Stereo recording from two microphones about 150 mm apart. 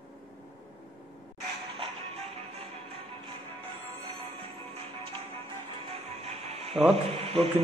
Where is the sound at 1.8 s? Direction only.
40° right (ahead or behind).